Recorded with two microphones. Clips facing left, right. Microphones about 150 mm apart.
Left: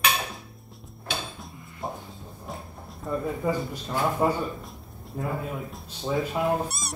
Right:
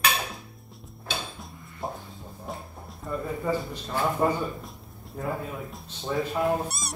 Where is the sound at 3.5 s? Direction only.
10° left (ahead or behind).